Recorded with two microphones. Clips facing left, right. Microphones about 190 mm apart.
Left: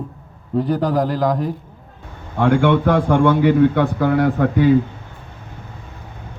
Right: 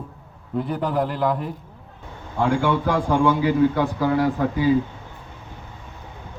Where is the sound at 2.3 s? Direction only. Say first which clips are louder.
Left 5 dB; 75° left (ahead or behind).